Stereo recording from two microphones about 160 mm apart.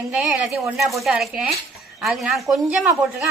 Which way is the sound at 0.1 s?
Centre (ahead or behind).